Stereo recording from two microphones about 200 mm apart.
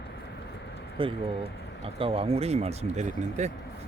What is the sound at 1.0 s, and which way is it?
Speech, 25° right (ahead or behind).